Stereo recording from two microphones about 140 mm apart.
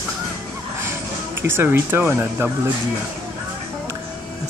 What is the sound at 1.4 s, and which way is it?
Speech, 15° right (ahead or behind).